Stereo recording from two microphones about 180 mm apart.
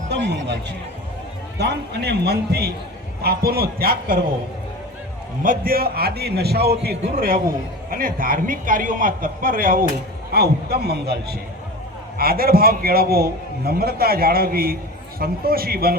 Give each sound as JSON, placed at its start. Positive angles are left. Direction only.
{"t": 0.1, "sound": "a man's voice", "side_deg": -70}
{"t": 5.4, "sound": "a man's voice", "side_deg": -50}